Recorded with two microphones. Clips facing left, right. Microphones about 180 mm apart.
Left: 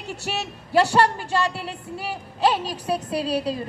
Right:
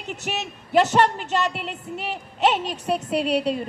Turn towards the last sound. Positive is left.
turn(degrees=-25)  # may be behind; listen again after turning